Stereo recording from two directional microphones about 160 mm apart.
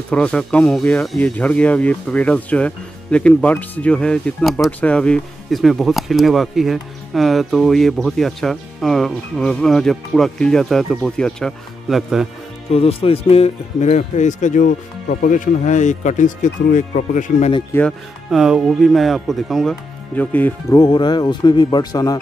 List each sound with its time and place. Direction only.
0.1 s speech: 5° left (ahead or behind)
12.7 s speech: 35° left (ahead or behind); by 17.5 s 55° left (ahead or behind)
18.3 s speech: 5° right (ahead or behind)
20.8 s speech: 25° left (ahead or behind)